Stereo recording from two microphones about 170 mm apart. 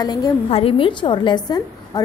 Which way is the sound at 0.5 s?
35° left (ahead or behind).